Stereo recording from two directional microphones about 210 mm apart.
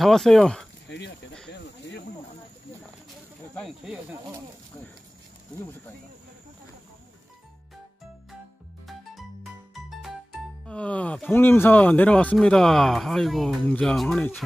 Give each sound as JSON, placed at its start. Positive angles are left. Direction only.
{"t": 0.0, "sound": "speech", "side_deg": 0}
{"t": 0.8, "sound": "speech", "side_deg": 55}
{"t": 3.5, "sound": "speech", "side_deg": 0}
{"t": 10.7, "sound": "speech", "side_deg": 5}